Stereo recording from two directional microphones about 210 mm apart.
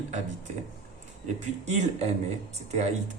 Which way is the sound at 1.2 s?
35° right (ahead or behind).